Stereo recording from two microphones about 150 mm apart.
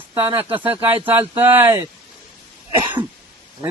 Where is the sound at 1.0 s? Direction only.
15° right (ahead or behind).